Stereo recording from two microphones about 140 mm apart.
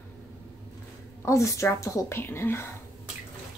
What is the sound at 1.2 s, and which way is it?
A woman's voice, 20° left (ahead or behind).